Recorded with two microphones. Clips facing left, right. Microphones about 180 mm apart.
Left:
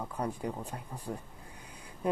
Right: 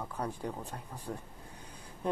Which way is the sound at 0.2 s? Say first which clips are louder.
Left 2 dB; 10° left (ahead or behind).